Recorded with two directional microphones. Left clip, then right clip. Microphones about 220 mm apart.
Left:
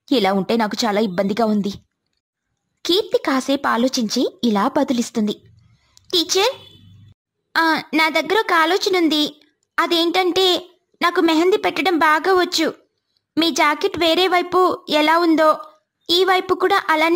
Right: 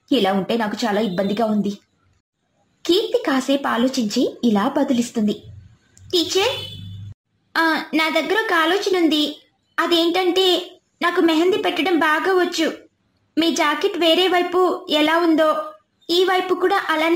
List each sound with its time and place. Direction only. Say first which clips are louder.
0.1 s a woman's voice: left 1 dB; 40° left (ahead or behind)
2.8 s a woman's voice: even; 35° left (ahead or behind)
7.5 s a woman's voice: left 1 dB; 35° left (ahead or behind)